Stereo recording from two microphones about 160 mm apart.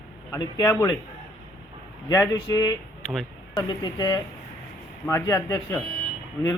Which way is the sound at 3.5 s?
25° left (ahead or behind).